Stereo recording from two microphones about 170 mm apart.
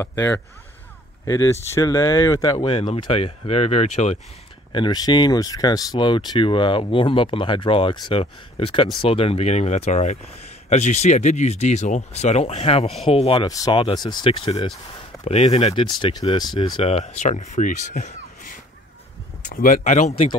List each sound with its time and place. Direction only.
0.0 s speech: 15° left (ahead or behind)
2.6 s speech: 30° left (ahead or behind)
4.7 s speech: 25° left (ahead or behind)
13.5 s speech: 25° left (ahead or behind); by 20.2 s 40° left (ahead or behind)